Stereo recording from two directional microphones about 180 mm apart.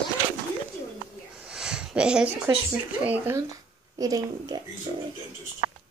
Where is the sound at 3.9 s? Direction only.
20° right (ahead or behind).